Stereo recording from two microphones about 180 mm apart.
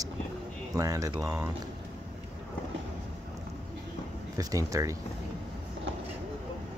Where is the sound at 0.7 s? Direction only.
20° right (ahead or behind).